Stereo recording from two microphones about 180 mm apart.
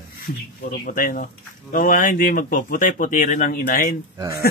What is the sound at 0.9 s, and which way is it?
Speech, 50° left (ahead or behind).